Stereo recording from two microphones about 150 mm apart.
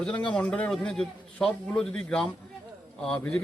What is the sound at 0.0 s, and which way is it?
A man's voice, 5° left (ahead or behind).